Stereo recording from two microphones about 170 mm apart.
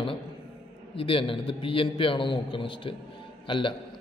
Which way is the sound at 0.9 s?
30° left (ahead or behind).